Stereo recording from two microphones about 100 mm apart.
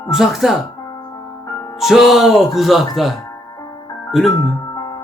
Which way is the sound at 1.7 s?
Centre (ahead or behind).